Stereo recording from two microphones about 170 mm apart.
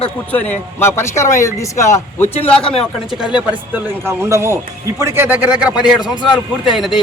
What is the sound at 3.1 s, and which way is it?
Speech, 5° right (ahead or behind).